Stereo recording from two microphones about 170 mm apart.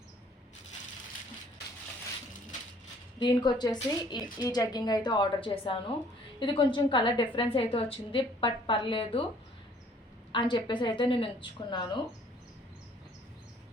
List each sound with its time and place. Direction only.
3.2 s a woman's voice: 25° left (ahead or behind)
10.3 s a woman's voice: 30° left (ahead or behind)